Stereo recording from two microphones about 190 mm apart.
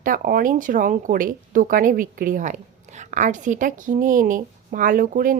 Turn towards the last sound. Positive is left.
turn(degrees=-45)  # may be behind; listen again after turning